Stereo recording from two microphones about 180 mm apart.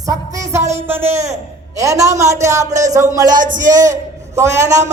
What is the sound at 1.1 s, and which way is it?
Speech, 40° right (ahead or behind).